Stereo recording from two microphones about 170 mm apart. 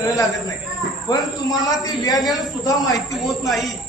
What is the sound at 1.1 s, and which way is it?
A man's voice, 20° left (ahead or behind).